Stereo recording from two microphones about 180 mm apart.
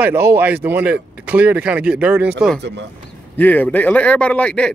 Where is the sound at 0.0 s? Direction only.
10° right (ahead or behind).